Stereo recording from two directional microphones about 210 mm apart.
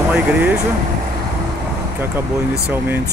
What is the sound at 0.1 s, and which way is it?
Speech, 5° right (ahead or behind).